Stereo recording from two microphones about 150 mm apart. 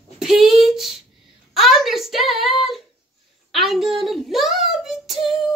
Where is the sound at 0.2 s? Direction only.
Centre (ahead or behind).